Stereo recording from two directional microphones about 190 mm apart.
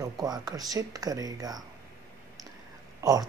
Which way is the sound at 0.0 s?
20° right (ahead or behind).